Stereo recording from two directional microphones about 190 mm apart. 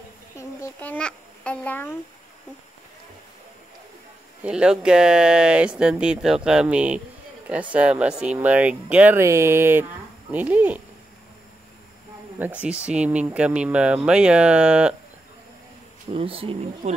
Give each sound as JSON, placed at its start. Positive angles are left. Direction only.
{"t": 0.4, "sound": "babbling", "side_deg": 10}
{"t": 4.5, "sound": "speech", "side_deg": -5}
{"t": 12.4, "sound": "speech", "side_deg": -5}
{"t": 16.1, "sound": "speech", "side_deg": -30}